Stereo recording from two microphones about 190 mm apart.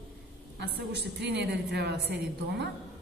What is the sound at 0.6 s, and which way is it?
A woman's voice, 60° right (ahead or behind).